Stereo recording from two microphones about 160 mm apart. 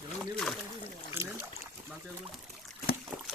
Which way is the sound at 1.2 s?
15° right (ahead or behind).